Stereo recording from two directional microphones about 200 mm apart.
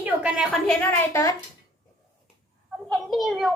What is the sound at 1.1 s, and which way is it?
Speech, 15° left (ahead or behind).